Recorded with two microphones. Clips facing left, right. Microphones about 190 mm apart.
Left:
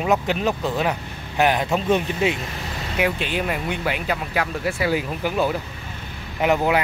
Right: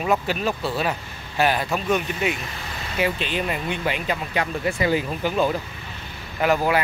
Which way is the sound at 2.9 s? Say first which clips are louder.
Left 1 dB; 10° left (ahead or behind).